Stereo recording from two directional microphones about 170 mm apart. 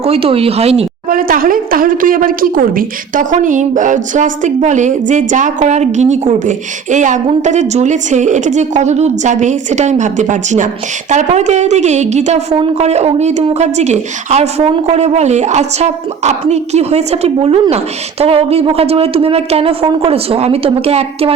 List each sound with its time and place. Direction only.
0.0 s a woman's voice: 35° right (ahead or behind)
1.1 s a woman's voice: 55° right (ahead or behind); by 21.3 s 35° right (ahead or behind)